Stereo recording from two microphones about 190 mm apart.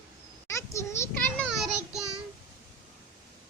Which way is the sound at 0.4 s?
15° left (ahead or behind).